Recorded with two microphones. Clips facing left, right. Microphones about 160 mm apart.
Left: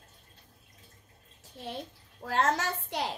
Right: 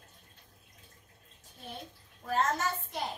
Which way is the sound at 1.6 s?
85° left.